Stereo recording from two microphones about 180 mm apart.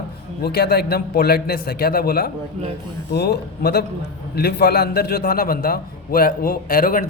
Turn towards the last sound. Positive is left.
turn(degrees=50)  # may be behind; listen again after turning